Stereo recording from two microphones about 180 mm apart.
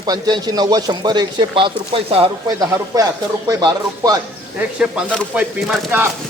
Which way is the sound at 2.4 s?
20° right (ahead or behind).